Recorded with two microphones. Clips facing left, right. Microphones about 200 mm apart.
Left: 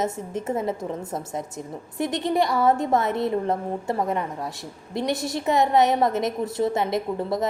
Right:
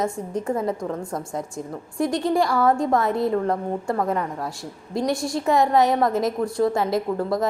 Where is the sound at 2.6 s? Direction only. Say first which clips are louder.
Right 1 dB; 20° left (ahead or behind).